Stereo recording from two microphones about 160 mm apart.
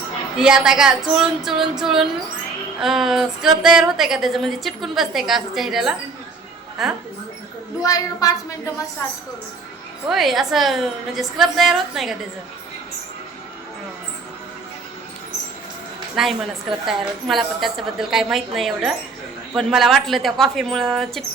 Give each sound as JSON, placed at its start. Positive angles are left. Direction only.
{"t": 0.3, "sound": "a woman's voice", "side_deg": -5}
{"t": 7.8, "sound": "a woman's voice", "side_deg": 20}
{"t": 10.1, "sound": "a woman's voice", "side_deg": 0}
{"t": 16.1, "sound": "a woman's voice", "side_deg": 0}